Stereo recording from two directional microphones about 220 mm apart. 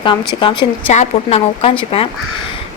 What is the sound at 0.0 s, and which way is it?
A woman's voice, 20° left (ahead or behind).